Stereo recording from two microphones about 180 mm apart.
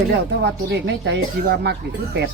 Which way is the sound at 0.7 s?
65° right (ahead or behind).